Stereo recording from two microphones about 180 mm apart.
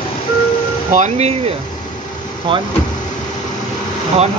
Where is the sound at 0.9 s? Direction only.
40° right (ahead or behind).